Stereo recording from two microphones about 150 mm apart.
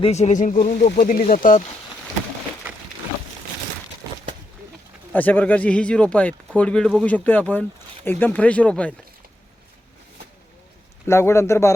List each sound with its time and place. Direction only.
0.0 s speech: 45° left (ahead or behind)
0.9 s speech: 70° left (ahead or behind)
1.2 s speech: 60° left (ahead or behind)
4.0 s a sound: 20° right (ahead or behind)
5.1 s a man's voice: 10° left (ahead or behind)
11.0 s a man's voice: 20° left (ahead or behind)